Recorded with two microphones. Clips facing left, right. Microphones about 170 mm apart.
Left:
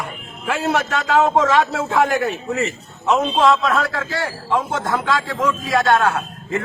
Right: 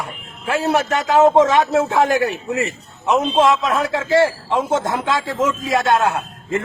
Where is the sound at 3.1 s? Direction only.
20° right (ahead or behind).